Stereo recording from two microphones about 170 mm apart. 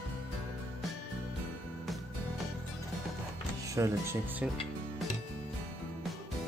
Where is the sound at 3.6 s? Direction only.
20° right (ahead or behind).